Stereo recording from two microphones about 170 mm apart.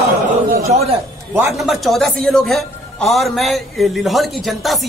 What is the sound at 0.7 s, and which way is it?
Speech, 40° right (ahead or behind).